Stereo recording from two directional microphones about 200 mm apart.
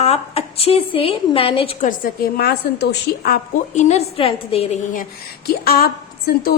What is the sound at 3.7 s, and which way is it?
A woman's voice, 35° left (ahead or behind).